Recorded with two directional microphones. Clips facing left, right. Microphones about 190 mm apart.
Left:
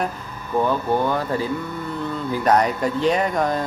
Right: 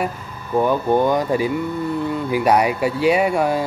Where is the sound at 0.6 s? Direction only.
15° right (ahead or behind).